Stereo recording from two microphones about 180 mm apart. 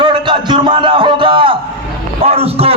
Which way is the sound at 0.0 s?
25° right (ahead or behind).